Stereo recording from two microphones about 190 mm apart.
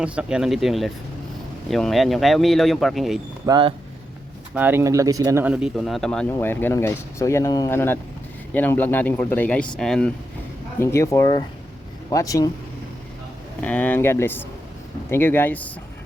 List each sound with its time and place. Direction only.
0.0 s speech: 5° right (ahead or behind)
3.4 s speech: 25° right (ahead or behind)
4.5 s speech: 10° right (ahead or behind)
10.8 s speech: 15° left (ahead or behind)
13.6 s speech: 10° left (ahead or behind)